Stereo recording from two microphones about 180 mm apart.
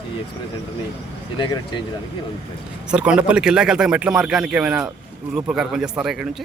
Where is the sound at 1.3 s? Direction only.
25° left (ahead or behind).